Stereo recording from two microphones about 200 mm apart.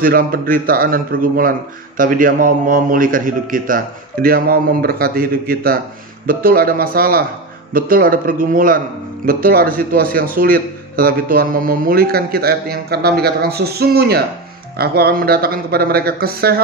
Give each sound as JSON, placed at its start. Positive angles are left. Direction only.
{"t": 0.0, "sound": "a man's voice", "side_deg": -45}